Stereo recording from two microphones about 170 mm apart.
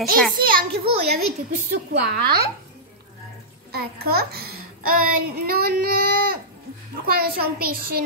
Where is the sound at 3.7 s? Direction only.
65° right (ahead or behind).